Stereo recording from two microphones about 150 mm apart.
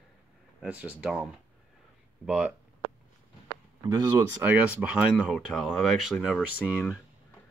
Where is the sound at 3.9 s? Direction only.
25° right (ahead or behind).